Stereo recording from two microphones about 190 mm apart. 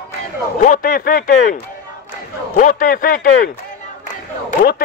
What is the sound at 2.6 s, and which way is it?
Speech, 45° left (ahead or behind).